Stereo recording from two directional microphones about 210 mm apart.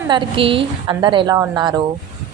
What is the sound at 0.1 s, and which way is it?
A woman's voice, 25° right (ahead or behind).